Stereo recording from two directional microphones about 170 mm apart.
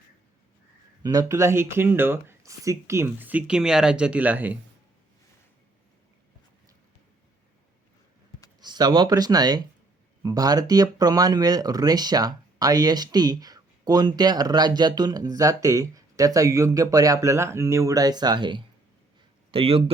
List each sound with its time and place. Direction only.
1.0 s speech: 20° right (ahead or behind)
8.6 s speech: 25° right (ahead or behind)